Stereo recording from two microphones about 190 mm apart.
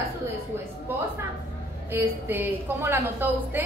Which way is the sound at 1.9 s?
10° right (ahead or behind).